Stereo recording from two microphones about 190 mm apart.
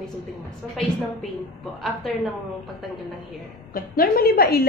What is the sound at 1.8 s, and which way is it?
Speech, centre (ahead or behind).